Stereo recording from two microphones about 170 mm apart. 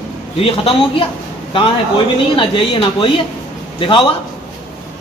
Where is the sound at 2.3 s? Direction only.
30° left (ahead or behind).